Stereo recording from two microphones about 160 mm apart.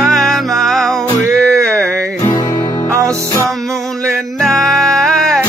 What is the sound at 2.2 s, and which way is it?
Music, 25° left (ahead or behind).